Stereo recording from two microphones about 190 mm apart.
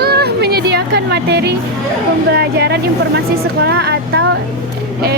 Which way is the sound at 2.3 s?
60° right (ahead or behind).